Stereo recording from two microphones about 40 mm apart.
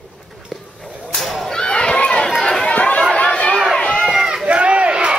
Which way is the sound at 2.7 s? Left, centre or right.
Left.